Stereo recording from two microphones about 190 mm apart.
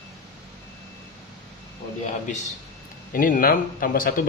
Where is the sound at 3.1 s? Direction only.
45° left (ahead or behind).